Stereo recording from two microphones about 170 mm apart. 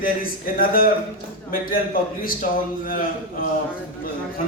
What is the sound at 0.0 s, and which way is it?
A man's voice, 55° left (ahead or behind).